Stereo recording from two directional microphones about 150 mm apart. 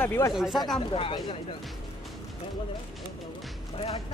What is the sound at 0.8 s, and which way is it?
Speech, 35° left (ahead or behind).